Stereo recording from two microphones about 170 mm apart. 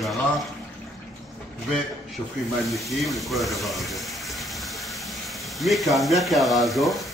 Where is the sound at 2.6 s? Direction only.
Centre (ahead or behind).